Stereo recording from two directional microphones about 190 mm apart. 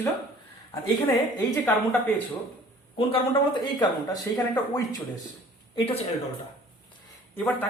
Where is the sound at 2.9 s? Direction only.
25° left (ahead or behind).